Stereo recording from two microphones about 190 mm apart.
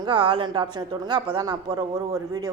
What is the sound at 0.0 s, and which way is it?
A woman's voice, 25° right (ahead or behind).